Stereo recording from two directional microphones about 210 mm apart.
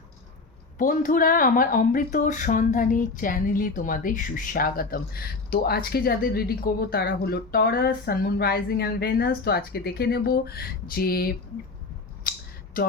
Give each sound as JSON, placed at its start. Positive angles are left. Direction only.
{"t": 0.8, "sound": "a woman's voice", "side_deg": 40}
{"t": 12.3, "sound": "a sound", "side_deg": 40}
{"t": 12.8, "sound": "speech", "side_deg": 40}